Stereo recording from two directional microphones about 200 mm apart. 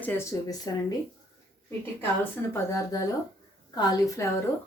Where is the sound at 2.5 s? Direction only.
15° left (ahead or behind).